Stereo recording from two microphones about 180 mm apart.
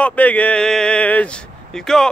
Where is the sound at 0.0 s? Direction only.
10° left (ahead or behind).